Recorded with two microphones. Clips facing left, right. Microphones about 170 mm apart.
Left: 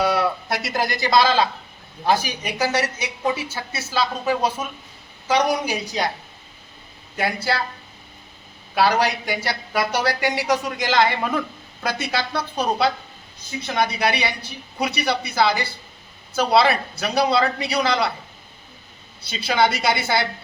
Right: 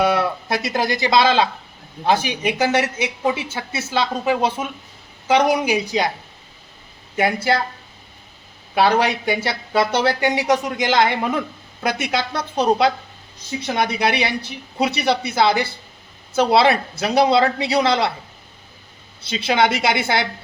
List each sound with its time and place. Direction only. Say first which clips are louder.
0.0 s a woman's voice: right 2 dB; 20° right (ahead or behind)
8.7 s a woman's voice: right 2 dB; 20° right (ahead or behind)
19.2 s a woman's voice: right 2 dB; 20° right (ahead or behind)